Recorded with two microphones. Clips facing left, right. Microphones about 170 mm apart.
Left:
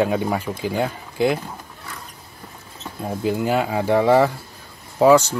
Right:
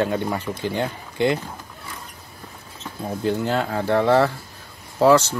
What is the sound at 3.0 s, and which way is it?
Speech, 10° left (ahead or behind).